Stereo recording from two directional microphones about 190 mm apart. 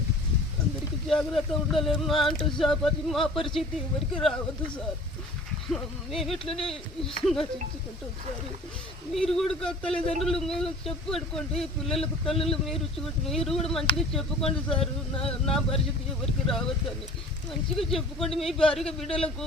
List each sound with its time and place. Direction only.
1.0 s speech: centre (ahead or behind)
5.7 s speech: centre (ahead or behind)
9.1 s speech: centre (ahead or behind)
14.7 s speech: 30° left (ahead or behind)
15.3 s speech: centre (ahead or behind)
17.7 s speech: centre (ahead or behind)